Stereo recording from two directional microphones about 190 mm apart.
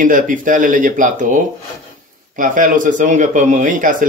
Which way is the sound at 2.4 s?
45° right (ahead or behind).